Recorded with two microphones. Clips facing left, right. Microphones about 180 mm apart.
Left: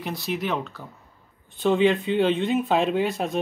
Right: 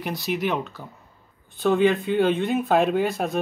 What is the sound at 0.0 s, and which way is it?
Speech, centre (ahead or behind).